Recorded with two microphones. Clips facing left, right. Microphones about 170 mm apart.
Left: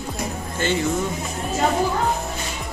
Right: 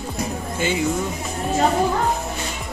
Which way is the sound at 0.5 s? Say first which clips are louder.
Even; 10° right (ahead or behind).